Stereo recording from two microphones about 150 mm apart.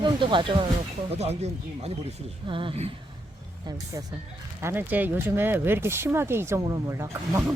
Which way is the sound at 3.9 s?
25° right (ahead or behind).